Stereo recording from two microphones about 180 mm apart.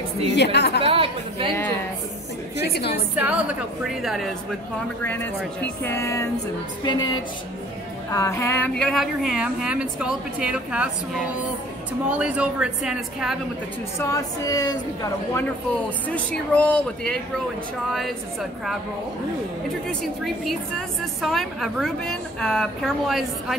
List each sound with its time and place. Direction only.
0.3 s a woman's voice: 70° left (ahead or behind)
0.8 s a woman's voice: 30° right (ahead or behind)
2.6 s a woman's voice: 65° left (ahead or behind)
3.2 s a woman's voice: 10° right (ahead or behind)
5.0 s speech: 10° left (ahead or behind)
6.8 s a sound: 25° left (ahead or behind)
8.1 s speech: 15° left (ahead or behind); by 13.4 s 5° right (ahead or behind)
13.9 s a sound: 15° left (ahead or behind)
16.3 s speech: 10° left (ahead or behind)
19.9 s speech: 5° left (ahead or behind)